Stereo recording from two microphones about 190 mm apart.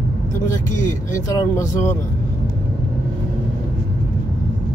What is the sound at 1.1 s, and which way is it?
Speech, 15° left (ahead or behind).